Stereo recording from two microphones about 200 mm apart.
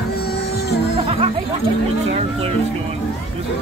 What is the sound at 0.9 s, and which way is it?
Music, 25° right (ahead or behind).